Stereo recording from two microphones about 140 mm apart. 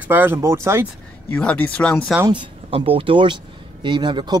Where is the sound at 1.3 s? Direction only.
10° left (ahead or behind).